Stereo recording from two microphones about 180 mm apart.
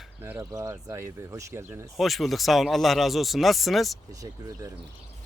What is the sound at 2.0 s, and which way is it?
Speech, centre (ahead or behind).